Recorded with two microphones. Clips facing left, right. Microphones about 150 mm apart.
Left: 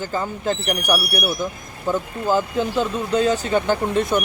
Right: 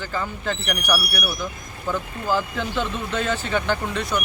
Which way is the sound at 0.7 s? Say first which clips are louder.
Left 3 dB; 20° left (ahead or behind).